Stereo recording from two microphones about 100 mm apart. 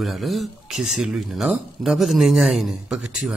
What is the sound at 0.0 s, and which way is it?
Speech, centre (ahead or behind).